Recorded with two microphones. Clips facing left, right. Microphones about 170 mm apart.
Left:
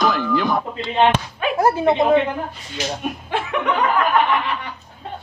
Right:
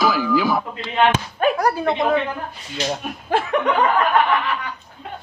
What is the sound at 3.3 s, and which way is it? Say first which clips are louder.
Chuckle: right 5 dB; 40° right (ahead or behind).